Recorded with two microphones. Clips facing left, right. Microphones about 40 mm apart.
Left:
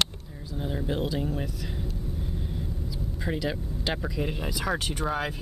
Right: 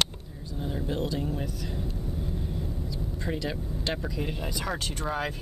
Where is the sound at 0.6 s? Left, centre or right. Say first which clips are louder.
Left 1 dB; centre.